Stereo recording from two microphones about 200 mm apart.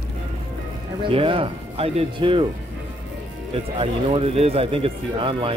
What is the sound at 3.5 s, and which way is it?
Speech, 30° right (ahead or behind).